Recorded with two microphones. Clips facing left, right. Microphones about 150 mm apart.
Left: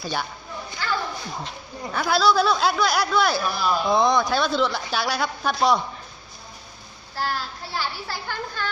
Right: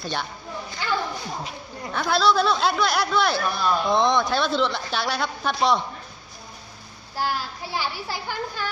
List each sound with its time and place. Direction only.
0.0 s speech: 5° left (ahead or behind)
0.8 s a sound: 15° right (ahead or behind)
1.4 s speech: centre (ahead or behind)
7.2 s a child's voice: 10° right (ahead or behind)